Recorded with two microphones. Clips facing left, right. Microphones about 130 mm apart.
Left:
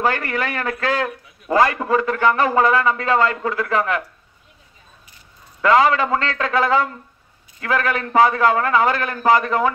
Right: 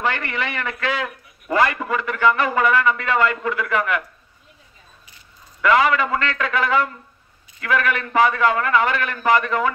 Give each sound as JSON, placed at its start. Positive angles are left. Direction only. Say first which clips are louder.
{"t": 0.0, "sound": "a man's voice", "louder": "left 3 dB", "side_deg": 40}
{"t": 5.6, "sound": "a man's voice", "louder": "left 2 dB", "side_deg": 30}